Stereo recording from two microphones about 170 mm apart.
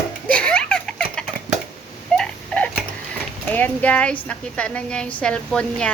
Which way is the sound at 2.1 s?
5° left (ahead or behind).